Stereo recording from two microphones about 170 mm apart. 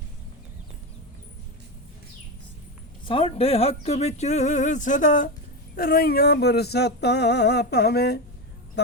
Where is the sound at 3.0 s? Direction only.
35° left (ahead or behind); by 5.3 s 50° left (ahead or behind).